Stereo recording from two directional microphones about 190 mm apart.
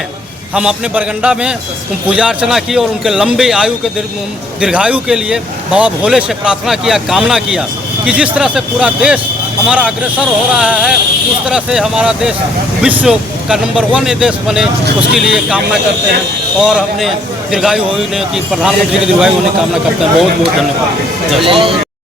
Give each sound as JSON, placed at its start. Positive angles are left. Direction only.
{"t": 0.5, "sound": "speech", "side_deg": -5}
{"t": 21.4, "sound": "speech", "side_deg": -25}